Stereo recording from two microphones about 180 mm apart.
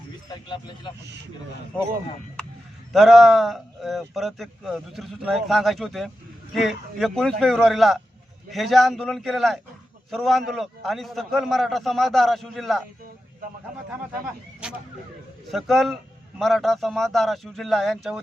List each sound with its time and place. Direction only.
0.4 s speech: 25° left (ahead or behind)
2.9 s speech: centre (ahead or behind)
14.6 s speech: 5° right (ahead or behind)